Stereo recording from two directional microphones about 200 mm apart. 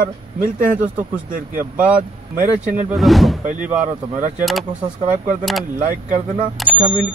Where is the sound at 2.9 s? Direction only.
Centre (ahead or behind).